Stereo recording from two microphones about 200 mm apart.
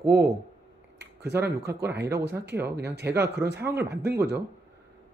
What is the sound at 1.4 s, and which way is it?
Speech, 55° right (ahead or behind).